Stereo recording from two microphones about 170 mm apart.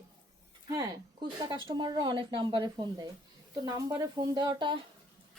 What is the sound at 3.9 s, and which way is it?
Speech, 20° right (ahead or behind).